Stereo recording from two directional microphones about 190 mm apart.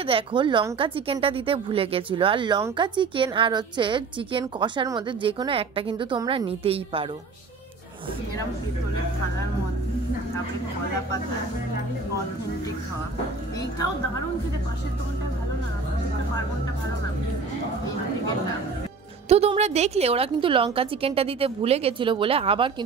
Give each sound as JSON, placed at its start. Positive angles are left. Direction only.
{"t": 0.0, "sound": "a woman's voice", "side_deg": -25}
{"t": 19.2, "sound": "a woman's voice", "side_deg": -35}